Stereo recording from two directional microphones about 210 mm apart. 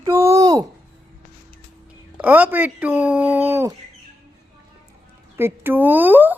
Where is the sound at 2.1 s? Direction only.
10° right (ahead or behind).